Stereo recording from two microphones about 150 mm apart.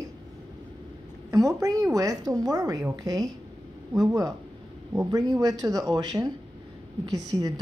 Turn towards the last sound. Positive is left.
turn(degrees=-25)  # may be behind; listen again after turning